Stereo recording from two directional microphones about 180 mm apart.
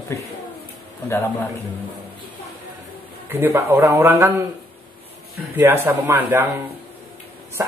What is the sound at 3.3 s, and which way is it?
A man's voice, 10° right (ahead or behind).